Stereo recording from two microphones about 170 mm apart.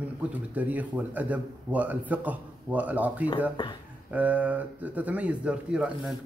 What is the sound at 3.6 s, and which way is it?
Speech, 25° left (ahead or behind).